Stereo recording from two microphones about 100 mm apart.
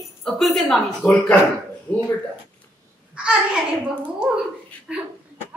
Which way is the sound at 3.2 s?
10° right (ahead or behind).